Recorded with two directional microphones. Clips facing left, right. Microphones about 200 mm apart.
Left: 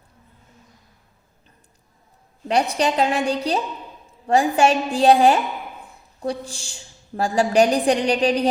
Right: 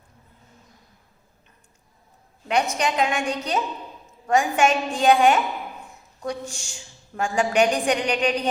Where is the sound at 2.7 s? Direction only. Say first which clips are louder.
Left 3 dB; 35° left (ahead or behind).